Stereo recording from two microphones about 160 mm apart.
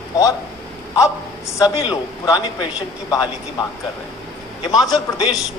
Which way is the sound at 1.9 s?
25° left (ahead or behind).